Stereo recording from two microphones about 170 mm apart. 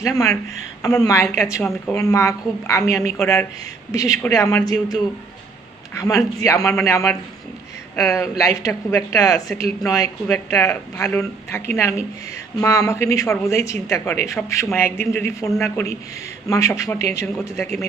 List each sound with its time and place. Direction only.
0.0 s a woman's voice: 20° left (ahead or behind)
16.5 s a woman's voice: 20° left (ahead or behind)